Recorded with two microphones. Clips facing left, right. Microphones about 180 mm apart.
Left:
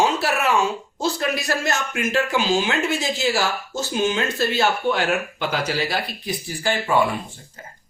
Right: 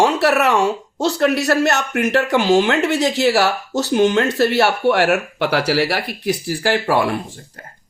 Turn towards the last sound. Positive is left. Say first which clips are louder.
# right 4 dB
turn(degrees=-80)